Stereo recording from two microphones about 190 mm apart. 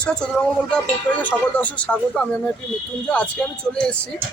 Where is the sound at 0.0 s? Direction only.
5° left (ahead or behind).